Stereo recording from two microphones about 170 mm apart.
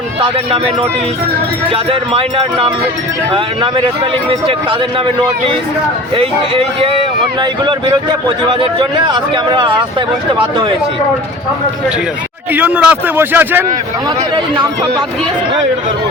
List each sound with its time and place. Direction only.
0.5 s speech: 35° right (ahead or behind)
12.5 s speech: 10° right (ahead or behind)
14.3 s speech: 25° right (ahead or behind)